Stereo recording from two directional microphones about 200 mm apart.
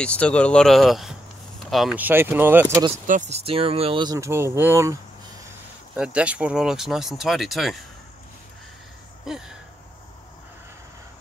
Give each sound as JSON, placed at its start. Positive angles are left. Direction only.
{"t": 0.0, "sound": "speech", "side_deg": 5}
{"t": 3.1, "sound": "speech", "side_deg": -35}
{"t": 5.9, "sound": "speech", "side_deg": -5}
{"t": 9.2, "sound": "a sound", "side_deg": 0}